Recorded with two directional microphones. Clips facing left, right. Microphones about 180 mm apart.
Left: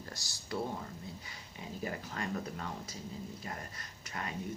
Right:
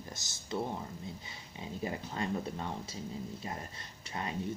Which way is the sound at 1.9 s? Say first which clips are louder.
Right 3 dB; 25° right (ahead or behind).